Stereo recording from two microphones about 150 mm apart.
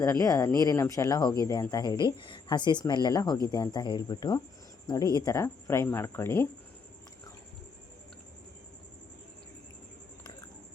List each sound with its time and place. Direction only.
0.0 s speech: 20° left (ahead or behind)